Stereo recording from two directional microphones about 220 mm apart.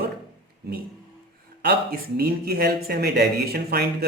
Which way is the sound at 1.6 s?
45° right (ahead or behind).